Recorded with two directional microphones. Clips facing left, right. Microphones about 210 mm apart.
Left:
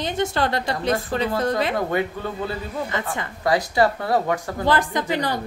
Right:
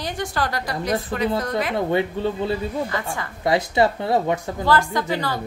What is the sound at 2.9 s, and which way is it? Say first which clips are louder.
Speech: even; 20° left (ahead or behind).